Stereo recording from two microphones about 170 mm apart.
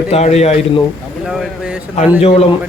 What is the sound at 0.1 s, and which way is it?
Speech, 40° left (ahead or behind).